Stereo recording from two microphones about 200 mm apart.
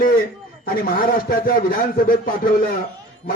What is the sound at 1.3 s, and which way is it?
Speech, 50° left (ahead or behind).